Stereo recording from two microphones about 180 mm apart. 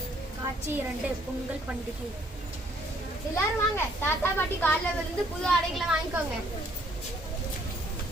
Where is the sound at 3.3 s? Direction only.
15° left (ahead or behind).